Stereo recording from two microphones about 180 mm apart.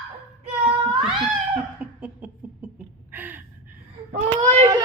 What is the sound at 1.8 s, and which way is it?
Laughter, 10° right (ahead or behind).